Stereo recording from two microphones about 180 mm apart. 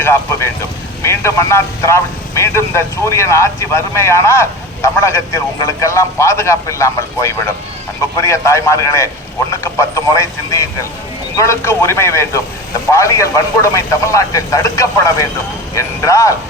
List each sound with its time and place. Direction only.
0.0 s speech: 15° left (ahead or behind)